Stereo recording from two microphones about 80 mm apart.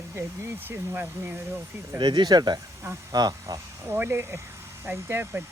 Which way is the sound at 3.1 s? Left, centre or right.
Right.